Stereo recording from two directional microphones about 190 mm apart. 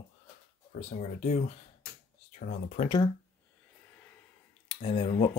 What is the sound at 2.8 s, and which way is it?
Speech, 25° left (ahead or behind).